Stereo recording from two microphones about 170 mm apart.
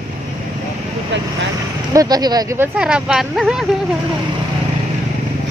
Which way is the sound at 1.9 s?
25° right (ahead or behind).